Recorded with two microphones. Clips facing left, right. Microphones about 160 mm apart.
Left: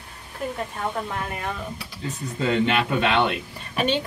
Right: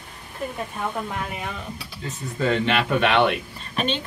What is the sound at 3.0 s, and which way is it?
Speech, 30° left (ahead or behind).